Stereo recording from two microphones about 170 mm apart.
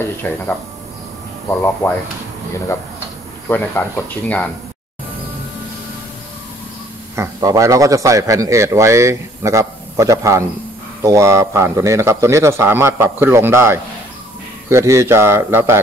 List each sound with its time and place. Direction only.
0.0 s speech: 10° left (ahead or behind)
1.8 s speech: 10° left (ahead or behind)
3.4 s speech: 10° left (ahead or behind)
7.2 s a man's voice: 20° right (ahead or behind)